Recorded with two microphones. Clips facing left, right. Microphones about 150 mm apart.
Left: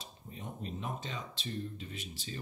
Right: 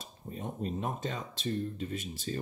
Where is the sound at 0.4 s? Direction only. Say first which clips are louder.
Right 6 dB; 45° right (ahead or behind).